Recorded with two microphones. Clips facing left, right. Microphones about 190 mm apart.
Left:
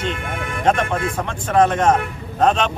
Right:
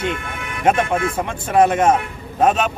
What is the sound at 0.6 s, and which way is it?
Speech, 10° right (ahead or behind).